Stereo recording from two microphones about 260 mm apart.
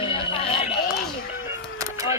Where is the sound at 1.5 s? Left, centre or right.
Centre.